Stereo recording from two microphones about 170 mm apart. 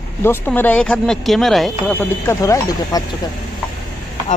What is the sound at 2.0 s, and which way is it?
Speech, 15° left (ahead or behind).